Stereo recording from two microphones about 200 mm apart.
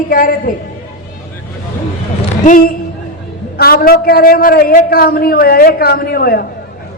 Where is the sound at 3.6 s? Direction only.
50° left (ahead or behind).